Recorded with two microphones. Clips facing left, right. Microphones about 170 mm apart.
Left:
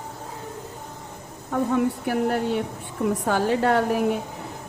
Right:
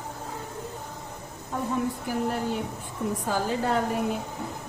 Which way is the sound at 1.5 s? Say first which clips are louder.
Left 6 dB; 70° left (ahead or behind).